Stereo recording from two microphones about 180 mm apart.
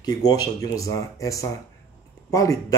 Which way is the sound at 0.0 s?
20° left (ahead or behind).